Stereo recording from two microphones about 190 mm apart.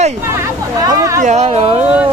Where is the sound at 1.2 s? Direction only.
35° right (ahead or behind).